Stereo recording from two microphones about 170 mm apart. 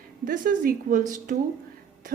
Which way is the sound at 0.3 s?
55° right (ahead or behind).